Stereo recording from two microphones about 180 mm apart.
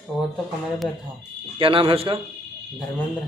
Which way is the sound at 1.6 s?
30° right (ahead or behind).